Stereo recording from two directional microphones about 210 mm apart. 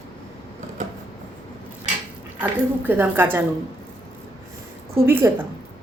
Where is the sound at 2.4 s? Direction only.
10° right (ahead or behind).